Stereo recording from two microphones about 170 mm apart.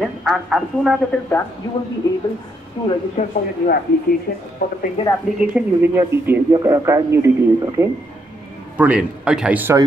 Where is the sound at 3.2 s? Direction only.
45° left (ahead or behind).